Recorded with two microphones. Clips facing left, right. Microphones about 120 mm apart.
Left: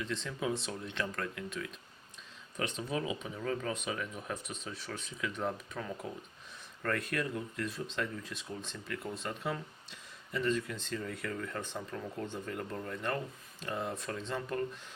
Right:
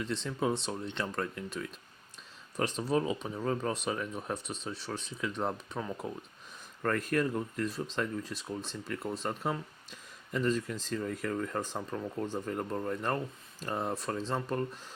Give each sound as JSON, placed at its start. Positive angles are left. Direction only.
{"t": 0.0, "sound": "speech", "side_deg": -35}
{"t": 6.8, "sound": "speech", "side_deg": -40}